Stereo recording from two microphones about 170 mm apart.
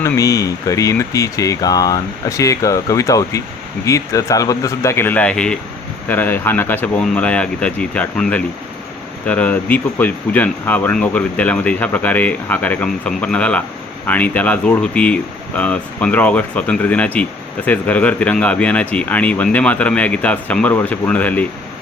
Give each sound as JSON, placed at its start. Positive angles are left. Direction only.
{"t": 0.0, "sound": "speech", "side_deg": 20}